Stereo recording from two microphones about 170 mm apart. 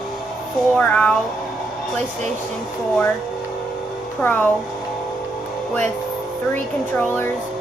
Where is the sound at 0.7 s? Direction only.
5° left (ahead or behind).